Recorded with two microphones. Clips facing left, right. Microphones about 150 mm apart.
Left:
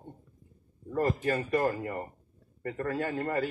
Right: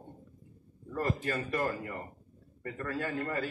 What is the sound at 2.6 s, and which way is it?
Speech, 35° left (ahead or behind).